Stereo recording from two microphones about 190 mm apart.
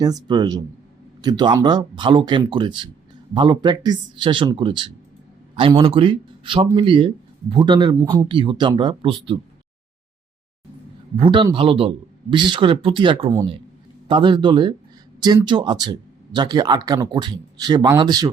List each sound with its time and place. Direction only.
0.0 s a man's voice: 20° right (ahead or behind)
11.2 s speech: 25° right (ahead or behind)